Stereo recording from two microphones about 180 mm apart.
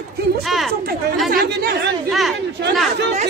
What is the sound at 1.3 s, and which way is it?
Speech, 55° right (ahead or behind).